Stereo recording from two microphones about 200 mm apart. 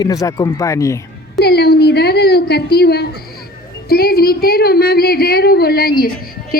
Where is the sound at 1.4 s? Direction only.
55° left (ahead or behind).